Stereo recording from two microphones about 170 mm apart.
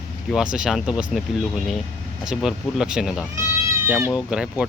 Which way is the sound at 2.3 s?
5° right (ahead or behind).